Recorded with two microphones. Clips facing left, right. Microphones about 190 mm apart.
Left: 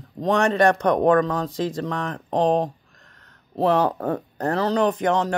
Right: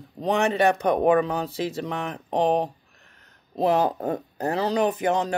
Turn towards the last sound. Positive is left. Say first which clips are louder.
# left 2 dB
turn(degrees=-10)  # may be behind; listen again after turning